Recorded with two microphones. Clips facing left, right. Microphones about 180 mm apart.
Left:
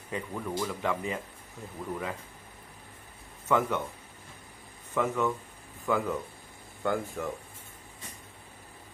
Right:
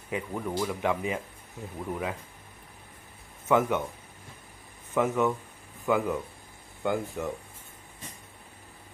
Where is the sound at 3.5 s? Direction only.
15° right (ahead or behind).